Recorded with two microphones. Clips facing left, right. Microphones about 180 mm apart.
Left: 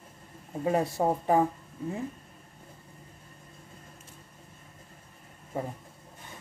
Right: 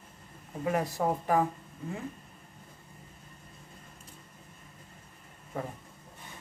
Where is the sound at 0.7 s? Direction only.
25° left (ahead or behind).